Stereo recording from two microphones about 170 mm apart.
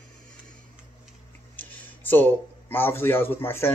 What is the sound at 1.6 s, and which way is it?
Speech, 10° left (ahead or behind).